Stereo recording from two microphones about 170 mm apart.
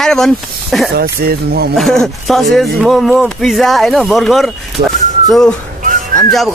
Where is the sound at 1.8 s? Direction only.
Centre (ahead or behind).